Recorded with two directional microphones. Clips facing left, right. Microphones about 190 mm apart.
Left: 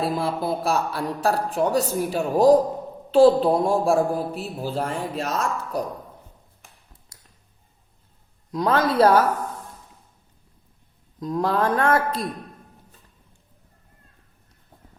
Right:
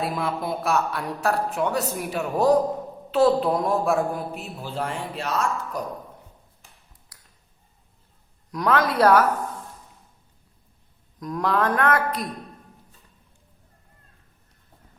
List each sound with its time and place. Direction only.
0.0 s a man's voice: 30° left (ahead or behind)
8.5 s speech: 25° left (ahead or behind)
11.2 s speech: 25° left (ahead or behind)